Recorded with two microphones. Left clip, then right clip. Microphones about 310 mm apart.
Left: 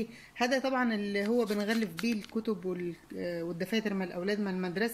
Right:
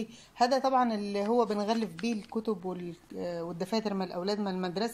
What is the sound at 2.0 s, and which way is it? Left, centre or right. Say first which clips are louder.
Speech: right 1 dB; right.